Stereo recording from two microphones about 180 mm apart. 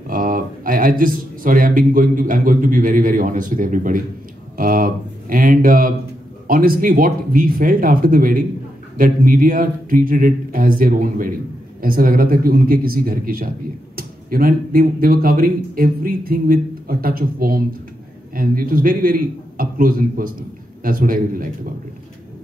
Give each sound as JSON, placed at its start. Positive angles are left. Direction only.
{"t": 0.1, "sound": "speech", "side_deg": -50}